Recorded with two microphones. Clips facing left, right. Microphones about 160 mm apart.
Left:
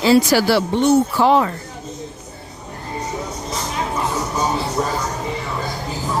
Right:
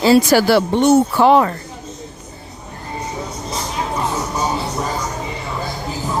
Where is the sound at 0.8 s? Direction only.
70° right (ahead or behind).